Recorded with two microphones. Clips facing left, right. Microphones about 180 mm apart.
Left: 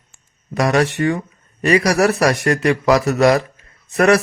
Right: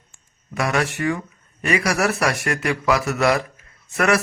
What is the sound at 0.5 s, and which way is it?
Speech, 35° left (ahead or behind).